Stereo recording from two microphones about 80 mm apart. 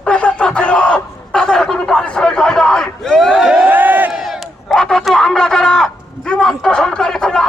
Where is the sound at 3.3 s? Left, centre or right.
Centre.